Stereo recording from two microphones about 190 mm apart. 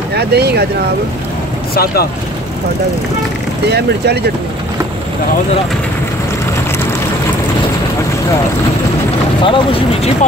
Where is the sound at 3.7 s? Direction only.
60° right (ahead or behind).